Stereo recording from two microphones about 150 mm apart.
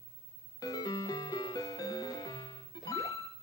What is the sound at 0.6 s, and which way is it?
Music, 25° left (ahead or behind).